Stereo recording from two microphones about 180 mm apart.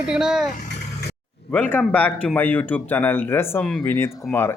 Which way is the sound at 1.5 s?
10° left (ahead or behind).